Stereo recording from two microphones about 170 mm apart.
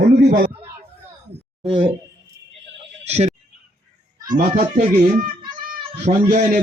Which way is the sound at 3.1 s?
40° right (ahead or behind).